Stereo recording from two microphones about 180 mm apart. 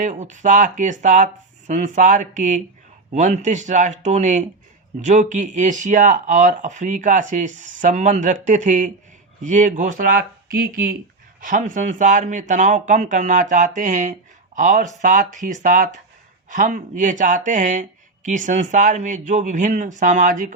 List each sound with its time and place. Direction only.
0.0 s speech: 45° right (ahead or behind)